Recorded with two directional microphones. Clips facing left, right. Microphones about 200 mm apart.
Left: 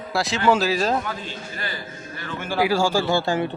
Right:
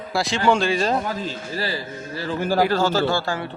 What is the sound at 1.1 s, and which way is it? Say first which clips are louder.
Speech: right 4 dB; 35° right (ahead or behind).